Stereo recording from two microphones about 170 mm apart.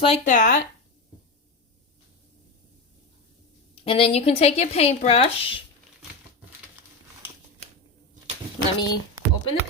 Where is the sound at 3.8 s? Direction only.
35° left (ahead or behind).